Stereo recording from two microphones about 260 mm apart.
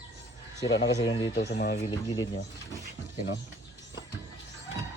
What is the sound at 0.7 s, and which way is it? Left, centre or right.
Speech, left.